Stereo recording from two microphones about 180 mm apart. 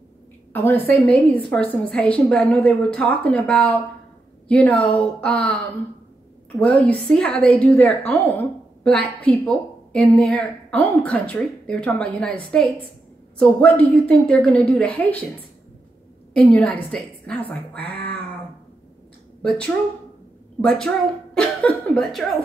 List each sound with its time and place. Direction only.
0.5 s a woman's voice: 10° left (ahead or behind)
6.6 s a woman's voice: 5° left (ahead or behind)
16.3 s a woman's voice: 5° left (ahead or behind)
20.6 s a woman's voice: 5° left (ahead or behind)
21.4 s cough: 5° left (ahead or behind)